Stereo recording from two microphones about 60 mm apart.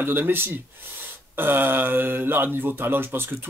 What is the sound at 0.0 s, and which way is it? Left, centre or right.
Speech, right.